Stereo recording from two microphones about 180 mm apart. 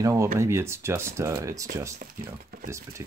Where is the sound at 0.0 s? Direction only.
15° right (ahead or behind).